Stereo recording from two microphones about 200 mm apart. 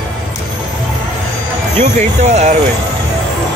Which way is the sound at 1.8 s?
35° right (ahead or behind).